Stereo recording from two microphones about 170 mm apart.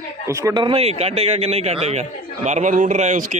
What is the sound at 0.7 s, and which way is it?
A man's voice, 35° right (ahead or behind).